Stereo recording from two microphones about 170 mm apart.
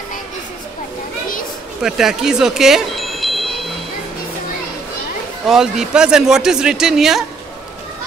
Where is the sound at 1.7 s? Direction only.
5° right (ahead or behind).